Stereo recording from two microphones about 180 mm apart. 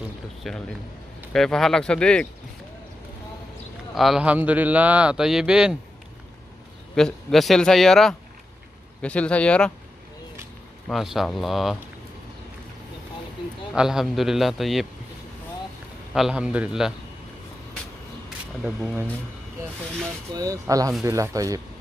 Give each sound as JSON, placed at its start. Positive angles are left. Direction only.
{"t": 0.4, "sound": "speech", "side_deg": 0}
{"t": 3.9, "sound": "speech", "side_deg": 0}
{"t": 7.0, "sound": "speech", "side_deg": 0}
{"t": 10.9, "sound": "speech", "side_deg": 0}
{"t": 13.7, "sound": "speech", "side_deg": -5}
{"t": 16.1, "sound": "speech", "side_deg": -5}
{"t": 20.3, "sound": "speech", "side_deg": -20}